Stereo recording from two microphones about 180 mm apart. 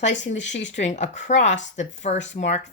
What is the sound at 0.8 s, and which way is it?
A woman's voice, 40° left (ahead or behind).